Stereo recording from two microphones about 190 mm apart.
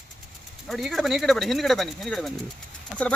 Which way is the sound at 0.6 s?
Centre (ahead or behind).